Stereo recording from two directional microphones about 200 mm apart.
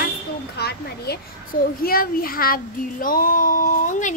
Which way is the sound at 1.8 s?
45° left (ahead or behind).